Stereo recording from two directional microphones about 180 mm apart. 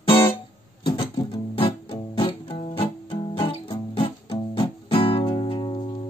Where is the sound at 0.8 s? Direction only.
30° left (ahead or behind).